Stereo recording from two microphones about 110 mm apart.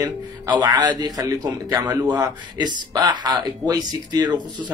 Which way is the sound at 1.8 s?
15° right (ahead or behind).